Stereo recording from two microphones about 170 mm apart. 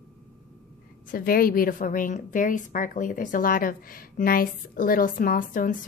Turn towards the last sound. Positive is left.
turn(degrees=55)  # may be behind; listen again after turning